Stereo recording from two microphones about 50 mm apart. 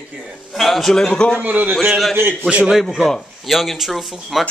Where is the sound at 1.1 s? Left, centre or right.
Centre.